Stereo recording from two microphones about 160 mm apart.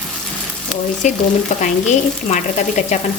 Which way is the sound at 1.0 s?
50° left (ahead or behind).